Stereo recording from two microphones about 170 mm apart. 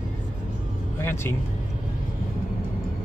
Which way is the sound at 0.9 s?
15° left (ahead or behind).